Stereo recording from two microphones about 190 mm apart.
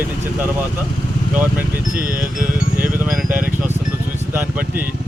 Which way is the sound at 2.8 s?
5° right (ahead or behind).